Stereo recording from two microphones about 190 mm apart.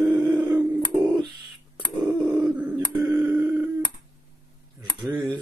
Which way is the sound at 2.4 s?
5° right (ahead or behind).